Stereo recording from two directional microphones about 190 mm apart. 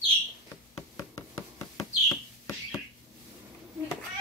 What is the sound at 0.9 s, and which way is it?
Knock, 15° left (ahead or behind).